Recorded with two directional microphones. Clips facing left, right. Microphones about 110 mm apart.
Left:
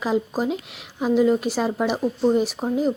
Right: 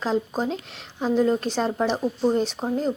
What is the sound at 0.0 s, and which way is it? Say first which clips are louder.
A woman's voice: left 2 dB; 5° left (ahead or behind).